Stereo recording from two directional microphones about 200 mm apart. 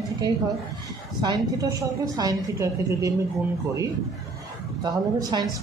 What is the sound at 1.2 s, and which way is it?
A woman's voice, 20° right (ahead or behind).